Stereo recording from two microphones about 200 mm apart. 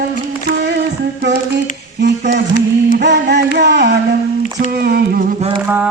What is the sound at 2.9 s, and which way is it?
Singing, 60° right (ahead or behind).